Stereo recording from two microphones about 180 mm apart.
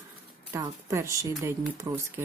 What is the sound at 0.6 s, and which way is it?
Speech, 15° right (ahead or behind).